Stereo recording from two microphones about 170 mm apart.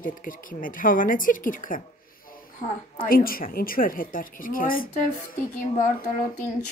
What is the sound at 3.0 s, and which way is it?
Speech, 60° left (ahead or behind).